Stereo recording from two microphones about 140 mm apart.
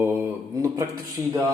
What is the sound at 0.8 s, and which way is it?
Speech, 20° right (ahead or behind).